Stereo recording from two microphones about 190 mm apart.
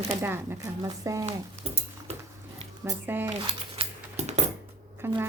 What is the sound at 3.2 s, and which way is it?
Coin, 25° right (ahead or behind).